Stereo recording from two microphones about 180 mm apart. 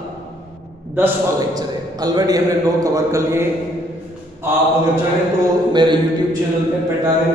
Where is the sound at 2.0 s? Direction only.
20° right (ahead or behind).